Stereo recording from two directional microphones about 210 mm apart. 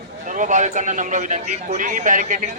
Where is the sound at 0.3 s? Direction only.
35° right (ahead or behind).